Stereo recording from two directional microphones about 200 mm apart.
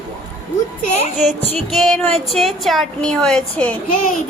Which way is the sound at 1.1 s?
35° right (ahead or behind).